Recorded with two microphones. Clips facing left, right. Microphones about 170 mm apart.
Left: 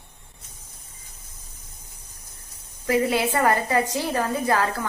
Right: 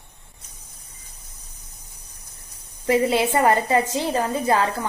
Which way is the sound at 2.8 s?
25° right (ahead or behind).